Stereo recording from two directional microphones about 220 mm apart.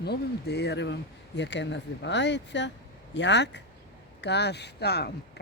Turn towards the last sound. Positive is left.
turn(degrees=50)  # may be behind; listen again after turning